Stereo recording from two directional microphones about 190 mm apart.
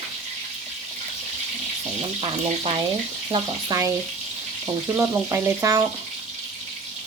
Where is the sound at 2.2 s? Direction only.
30° right (ahead or behind).